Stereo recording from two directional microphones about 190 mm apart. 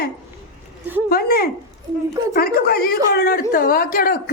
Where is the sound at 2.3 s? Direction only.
50° left (ahead or behind).